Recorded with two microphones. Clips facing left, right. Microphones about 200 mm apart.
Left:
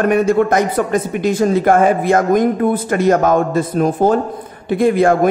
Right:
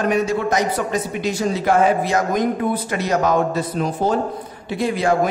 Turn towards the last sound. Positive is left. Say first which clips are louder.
# left 6 dB
turn(degrees=50)  # may be behind; listen again after turning